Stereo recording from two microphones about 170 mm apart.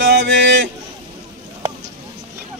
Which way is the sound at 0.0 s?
60° right (ahead or behind).